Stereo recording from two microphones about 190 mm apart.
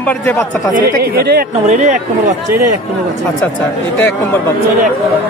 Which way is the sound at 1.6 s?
35° right (ahead or behind).